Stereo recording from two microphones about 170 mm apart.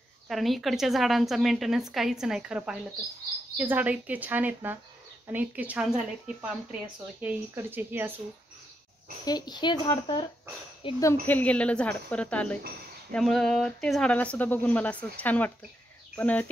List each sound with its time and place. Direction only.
0.3 s speech: centre (ahead or behind)
9.2 s a woman's voice: 25° left (ahead or behind)
11.0 s speech: 15° left (ahead or behind)